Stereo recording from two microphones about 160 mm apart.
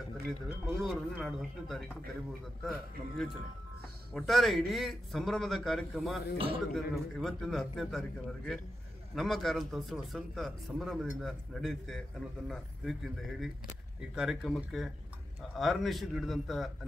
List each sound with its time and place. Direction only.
0.5 s speech: 5° right (ahead or behind)
6.3 s speech: 35° right (ahead or behind)
6.7 s speech: centre (ahead or behind)
9.1 s speech: centre (ahead or behind)